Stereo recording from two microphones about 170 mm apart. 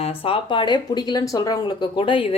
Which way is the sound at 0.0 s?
30° left (ahead or behind).